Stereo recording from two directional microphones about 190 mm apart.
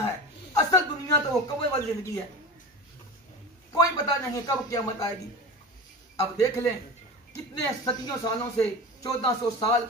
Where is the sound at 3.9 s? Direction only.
20° left (ahead or behind).